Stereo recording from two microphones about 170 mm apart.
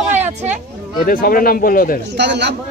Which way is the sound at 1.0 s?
55° left (ahead or behind).